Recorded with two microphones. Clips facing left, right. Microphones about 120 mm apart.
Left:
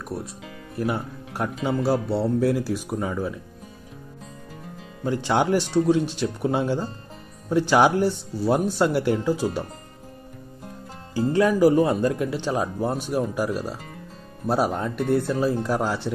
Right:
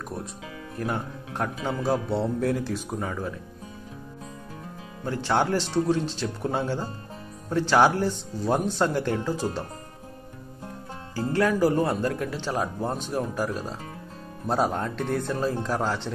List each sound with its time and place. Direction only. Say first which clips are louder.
0.1 s speech: left 2 dB; 5° left (ahead or behind)
5.0 s speech: left 3 dB; 15° left (ahead or behind)
11.1 s speech: left 4 dB; 15° left (ahead or behind)